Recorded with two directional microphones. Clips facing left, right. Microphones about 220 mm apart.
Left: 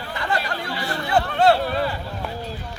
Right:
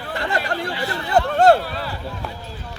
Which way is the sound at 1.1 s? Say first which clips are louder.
Right 3 dB; 40° right (ahead or behind).